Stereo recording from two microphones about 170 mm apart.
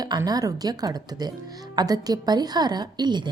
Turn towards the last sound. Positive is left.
turn(degrees=-25)  # may be behind; listen again after turning